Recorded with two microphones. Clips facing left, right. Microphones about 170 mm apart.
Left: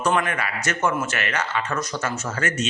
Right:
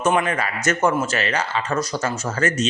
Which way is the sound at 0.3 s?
40° right (ahead or behind).